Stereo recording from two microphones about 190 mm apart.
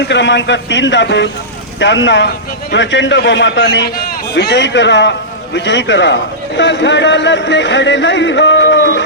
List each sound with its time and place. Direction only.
0.0 s speech: 70° left (ahead or behind)